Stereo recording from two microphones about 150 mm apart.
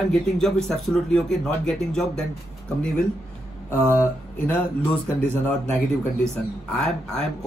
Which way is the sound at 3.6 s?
15° left (ahead or behind).